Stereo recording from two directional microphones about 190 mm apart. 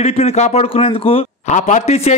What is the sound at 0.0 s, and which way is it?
A man's voice, 35° left (ahead or behind).